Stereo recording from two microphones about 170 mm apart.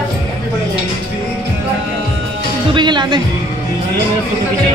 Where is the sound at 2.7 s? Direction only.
25° right (ahead or behind).